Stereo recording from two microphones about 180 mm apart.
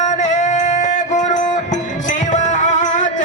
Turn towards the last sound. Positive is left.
turn(degrees=40)  # may be behind; listen again after turning